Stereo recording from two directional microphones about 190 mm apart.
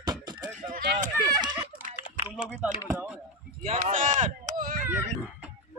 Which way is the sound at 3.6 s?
40° right (ahead or behind).